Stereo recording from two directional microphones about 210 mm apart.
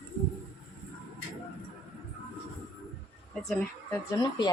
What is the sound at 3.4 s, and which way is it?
Speech, 10° left (ahead or behind).